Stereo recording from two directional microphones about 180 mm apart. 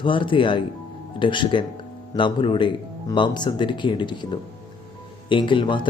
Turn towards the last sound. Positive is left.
turn(degrees=25)  # may be behind; listen again after turning